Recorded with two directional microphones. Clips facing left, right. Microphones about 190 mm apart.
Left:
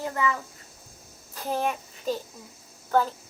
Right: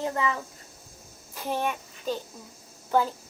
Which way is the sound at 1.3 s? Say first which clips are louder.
Left 1 dB; centre (ahead or behind).